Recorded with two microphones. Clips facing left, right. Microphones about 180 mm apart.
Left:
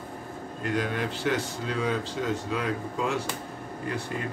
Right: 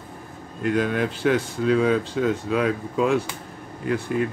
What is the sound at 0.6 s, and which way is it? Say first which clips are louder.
Speech: right 7 dB; 55° right (ahead or behind).